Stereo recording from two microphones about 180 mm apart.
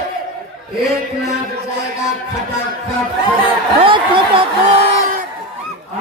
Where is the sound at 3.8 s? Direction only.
30° right (ahead or behind).